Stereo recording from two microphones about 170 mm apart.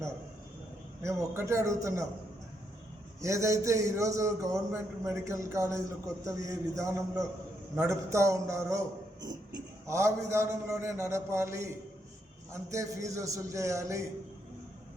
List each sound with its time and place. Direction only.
1.0 s a man's voice: 15° right (ahead or behind)
3.2 s a man's voice: 20° right (ahead or behind)
9.8 s a man's voice: 15° right (ahead or behind)
12.7 s a man's voice: 20° right (ahead or behind)